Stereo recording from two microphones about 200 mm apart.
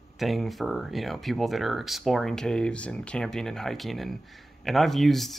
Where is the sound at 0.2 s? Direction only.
Centre (ahead or behind).